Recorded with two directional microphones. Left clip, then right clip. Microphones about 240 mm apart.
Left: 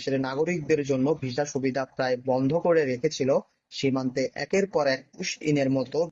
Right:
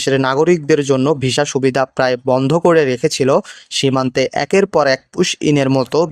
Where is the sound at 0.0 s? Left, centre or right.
Right.